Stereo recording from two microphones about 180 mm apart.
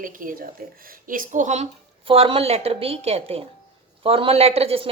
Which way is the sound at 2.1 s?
30° right (ahead or behind).